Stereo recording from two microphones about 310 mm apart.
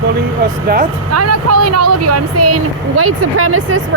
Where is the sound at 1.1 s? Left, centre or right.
Right.